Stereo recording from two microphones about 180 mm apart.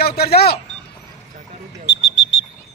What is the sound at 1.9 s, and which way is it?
Alarm, 80° left.